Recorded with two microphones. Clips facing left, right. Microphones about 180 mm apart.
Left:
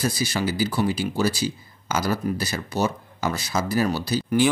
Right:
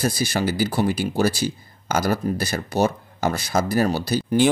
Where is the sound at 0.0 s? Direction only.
50° right (ahead or behind).